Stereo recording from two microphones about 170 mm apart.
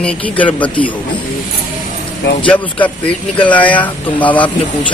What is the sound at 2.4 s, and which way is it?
Speech, 10° left (ahead or behind).